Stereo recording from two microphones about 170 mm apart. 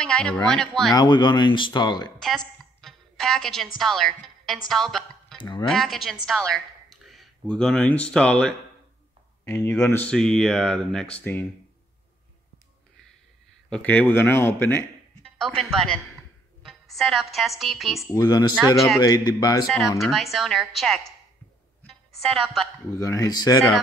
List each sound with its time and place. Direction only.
0.0 s speech: 5° left (ahead or behind)
0.9 s speech: 25° left (ahead or behind)
2.1 s a woman's voice: centre (ahead or behind)
5.4 s speech: 25° left (ahead or behind)
5.7 s speech: centre (ahead or behind)
13.7 s speech: 10° left (ahead or behind)
15.4 s speech: 5° left (ahead or behind)
18.1 s speech: 25° left (ahead or behind)
20.0 s speech: centre (ahead or behind)
21.8 s music: centre (ahead or behind)
22.8 s speech: 15° left (ahead or behind)